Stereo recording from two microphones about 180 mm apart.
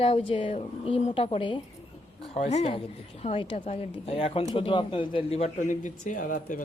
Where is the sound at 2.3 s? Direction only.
40° left (ahead or behind).